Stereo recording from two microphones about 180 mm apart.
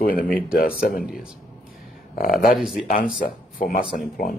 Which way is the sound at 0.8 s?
Centre (ahead or behind).